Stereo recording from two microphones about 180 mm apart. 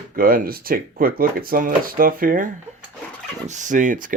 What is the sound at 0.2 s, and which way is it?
Speech, 55° right (ahead or behind).